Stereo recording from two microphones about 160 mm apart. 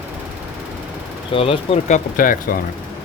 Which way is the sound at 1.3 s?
35° left (ahead or behind).